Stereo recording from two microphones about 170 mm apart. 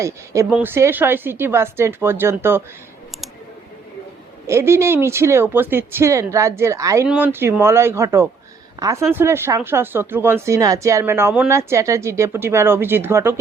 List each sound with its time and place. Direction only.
0.0 s speech: 15° right (ahead or behind)
4.4 s speech: 15° right (ahead or behind)